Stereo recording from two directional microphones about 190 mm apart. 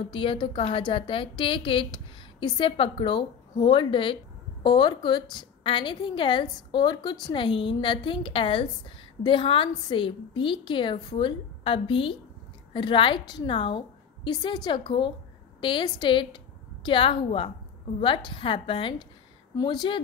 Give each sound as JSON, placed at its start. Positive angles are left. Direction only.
{"t": 0.1, "sound": "a woman's voice", "side_deg": 25}